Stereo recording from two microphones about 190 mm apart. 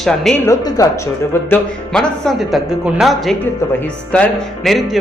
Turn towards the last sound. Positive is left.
turn(degrees=0)  # may be behind; listen again after turning